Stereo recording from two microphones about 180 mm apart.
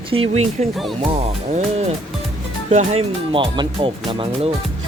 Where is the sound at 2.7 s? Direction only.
35° right (ahead or behind).